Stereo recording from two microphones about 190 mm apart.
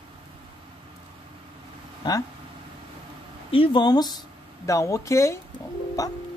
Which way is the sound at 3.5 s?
25° left (ahead or behind).